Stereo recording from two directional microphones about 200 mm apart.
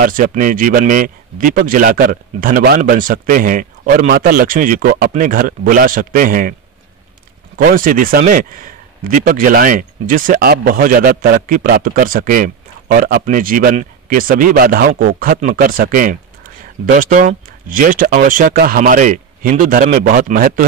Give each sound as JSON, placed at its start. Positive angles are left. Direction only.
{"t": 0.0, "sound": "a man's voice", "side_deg": -45}
{"t": 7.5, "sound": "a man's voice", "side_deg": -45}